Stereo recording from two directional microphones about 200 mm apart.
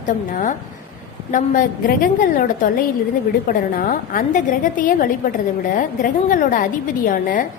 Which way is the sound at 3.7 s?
45° left (ahead or behind).